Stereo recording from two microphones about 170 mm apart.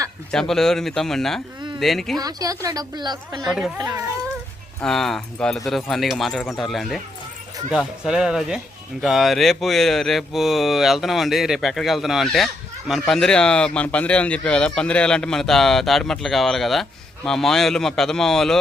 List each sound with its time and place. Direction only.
0.3 s speech: 5° left (ahead or behind)
2.1 s speech: 20° right (ahead or behind)
4.8 s speech: centre (ahead or behind)